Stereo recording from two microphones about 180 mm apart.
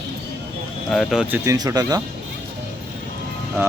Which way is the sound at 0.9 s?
Centre (ahead or behind).